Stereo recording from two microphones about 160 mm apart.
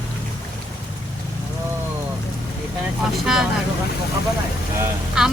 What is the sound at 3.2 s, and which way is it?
Speech, 5° right (ahead or behind).